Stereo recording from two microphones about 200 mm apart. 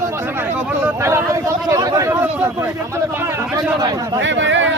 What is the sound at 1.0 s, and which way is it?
Speech, 15° right (ahead or behind).